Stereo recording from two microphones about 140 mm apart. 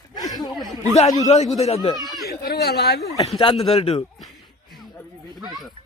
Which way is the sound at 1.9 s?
Centre (ahead or behind).